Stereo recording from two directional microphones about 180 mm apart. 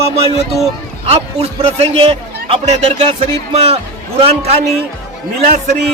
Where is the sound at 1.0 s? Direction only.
35° right (ahead or behind).